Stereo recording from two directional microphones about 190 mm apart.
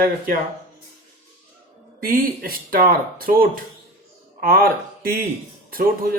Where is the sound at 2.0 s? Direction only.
50° right (ahead or behind).